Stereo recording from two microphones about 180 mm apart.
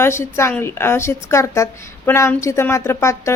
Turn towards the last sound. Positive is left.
turn(degrees=15)  # may be behind; listen again after turning